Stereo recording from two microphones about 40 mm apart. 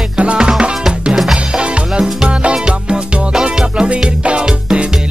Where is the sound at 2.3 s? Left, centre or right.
Right.